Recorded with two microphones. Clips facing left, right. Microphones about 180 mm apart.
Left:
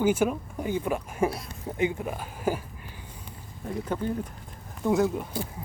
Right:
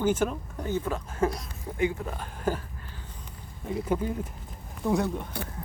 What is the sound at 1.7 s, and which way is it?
Speech, 20° left (ahead or behind).